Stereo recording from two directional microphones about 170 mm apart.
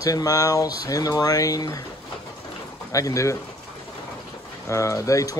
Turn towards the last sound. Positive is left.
turn(degrees=20)  # may be behind; listen again after turning